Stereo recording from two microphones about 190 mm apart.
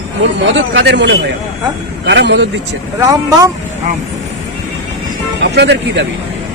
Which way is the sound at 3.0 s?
20° right (ahead or behind).